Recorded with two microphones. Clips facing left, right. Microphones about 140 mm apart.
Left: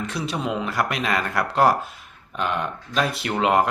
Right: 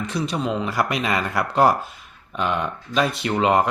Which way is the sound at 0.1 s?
Centre (ahead or behind).